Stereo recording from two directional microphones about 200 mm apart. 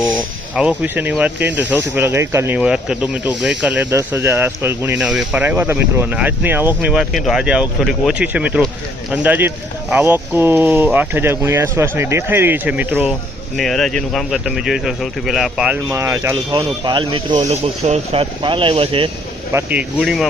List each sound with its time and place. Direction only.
0.5 s speech: 5° right (ahead or behind); by 19.1 s 25° right (ahead or behind)
19.5 s speech: 5° right (ahead or behind)